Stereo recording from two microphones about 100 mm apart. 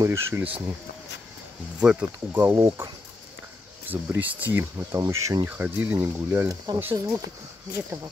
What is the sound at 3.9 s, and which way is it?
Speech, 20° right (ahead or behind).